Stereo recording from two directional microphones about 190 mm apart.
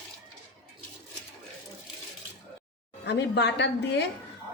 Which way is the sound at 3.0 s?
65° left (ahead or behind).